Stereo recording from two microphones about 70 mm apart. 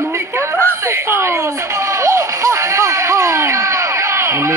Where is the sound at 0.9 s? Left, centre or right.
Right.